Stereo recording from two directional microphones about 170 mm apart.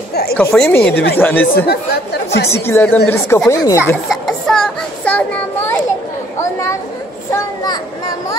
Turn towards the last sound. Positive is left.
turn(degrees=20)  # may be behind; listen again after turning